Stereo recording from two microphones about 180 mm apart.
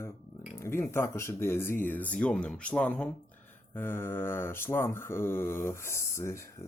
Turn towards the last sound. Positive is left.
turn(degrees=15)  # may be behind; listen again after turning